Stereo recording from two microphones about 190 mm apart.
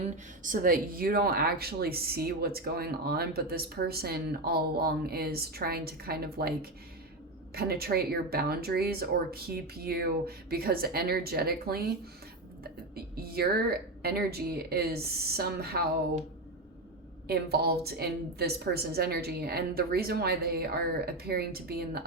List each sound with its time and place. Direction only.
0.0 s speech: 45° right (ahead or behind)
13.1 s speech: 55° right (ahead or behind)
17.2 s speech: 55° right (ahead or behind)